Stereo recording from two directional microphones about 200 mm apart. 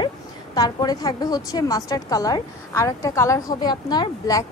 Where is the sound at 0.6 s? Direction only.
20° left (ahead or behind).